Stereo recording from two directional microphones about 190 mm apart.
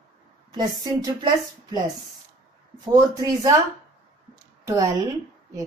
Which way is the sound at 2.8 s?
20° right (ahead or behind).